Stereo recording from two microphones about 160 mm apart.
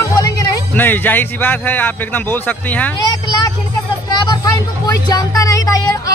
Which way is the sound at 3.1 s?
25° left (ahead or behind).